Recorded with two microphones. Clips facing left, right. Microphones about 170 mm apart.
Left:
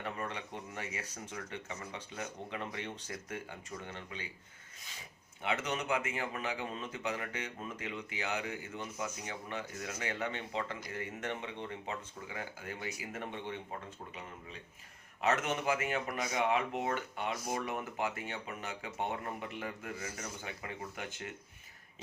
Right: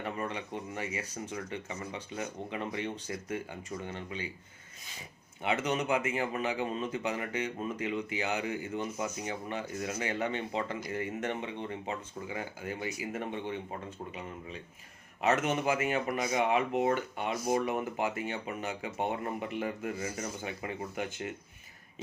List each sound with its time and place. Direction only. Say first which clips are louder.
0.2 s speech: right 4 dB; 10° right (ahead or behind)
5.4 s speech: right 5 dB; 15° right (ahead or behind)
15.2 s speech: right 4 dB; 15° right (ahead or behind)